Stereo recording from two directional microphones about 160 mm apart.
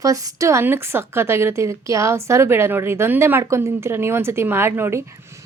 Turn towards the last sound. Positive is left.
turn(degrees=-15)  # may be behind; listen again after turning